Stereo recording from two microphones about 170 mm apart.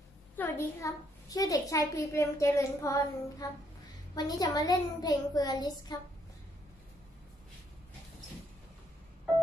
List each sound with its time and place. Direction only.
0.4 s a child's voice: 15° left (ahead or behind)